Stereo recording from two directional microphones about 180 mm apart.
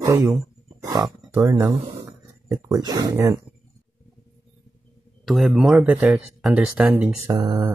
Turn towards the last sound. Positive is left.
turn(degrees=-20)  # may be behind; listen again after turning